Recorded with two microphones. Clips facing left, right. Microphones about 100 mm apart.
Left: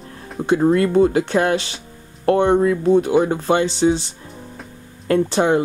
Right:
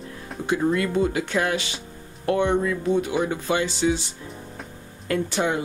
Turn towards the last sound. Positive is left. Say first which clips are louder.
# left 7 dB
turn(degrees=35)  # may be behind; listen again after turning